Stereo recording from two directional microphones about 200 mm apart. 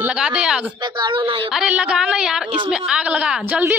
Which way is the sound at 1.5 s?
5° right (ahead or behind).